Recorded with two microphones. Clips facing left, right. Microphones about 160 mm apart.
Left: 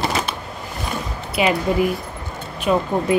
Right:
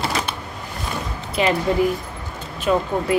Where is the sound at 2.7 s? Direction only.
15° left (ahead or behind).